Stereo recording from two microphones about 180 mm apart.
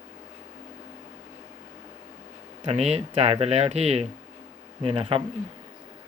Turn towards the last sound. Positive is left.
turn(degrees=-30)  # may be behind; listen again after turning